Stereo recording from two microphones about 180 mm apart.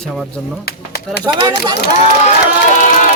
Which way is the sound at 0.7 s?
60° left (ahead or behind).